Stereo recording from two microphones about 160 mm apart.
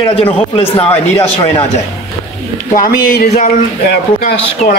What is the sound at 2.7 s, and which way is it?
Speech, 65° left (ahead or behind).